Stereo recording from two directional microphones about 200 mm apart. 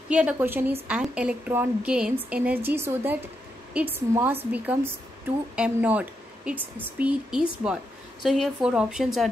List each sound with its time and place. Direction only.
0.1 s a woman's voice: 5° right (ahead or behind)